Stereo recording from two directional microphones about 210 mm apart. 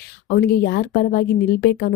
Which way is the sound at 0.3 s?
45° left (ahead or behind).